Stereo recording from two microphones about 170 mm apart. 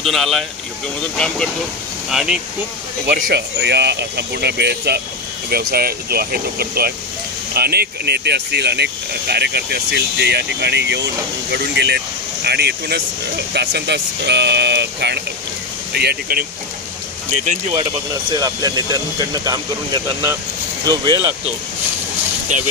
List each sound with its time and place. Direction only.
0.0 s speech: centre (ahead or behind)
3.1 s speech: 70° right (ahead or behind)
18.3 s speech: 25° right (ahead or behind)
22.5 s speech: 45° right (ahead or behind)